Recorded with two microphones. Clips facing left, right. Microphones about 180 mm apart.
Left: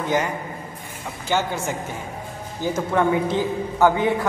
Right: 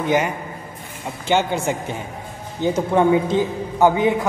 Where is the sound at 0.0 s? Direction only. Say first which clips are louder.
Right 3 dB; 20° right (ahead or behind).